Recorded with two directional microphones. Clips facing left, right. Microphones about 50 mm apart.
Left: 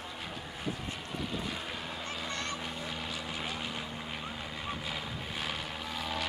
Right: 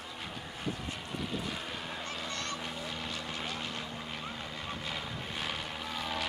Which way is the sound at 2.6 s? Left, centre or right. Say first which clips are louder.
Even; centre.